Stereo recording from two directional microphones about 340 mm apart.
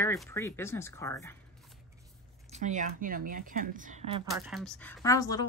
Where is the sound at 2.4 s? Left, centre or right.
Right.